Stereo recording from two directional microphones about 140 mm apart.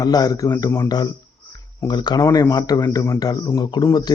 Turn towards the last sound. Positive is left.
turn(degrees=30)  # may be behind; listen again after turning